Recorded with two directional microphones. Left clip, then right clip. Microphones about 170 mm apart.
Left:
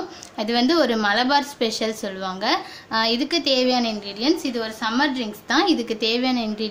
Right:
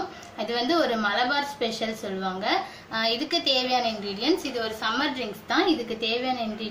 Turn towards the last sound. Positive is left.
turn(degrees=60)  # may be behind; listen again after turning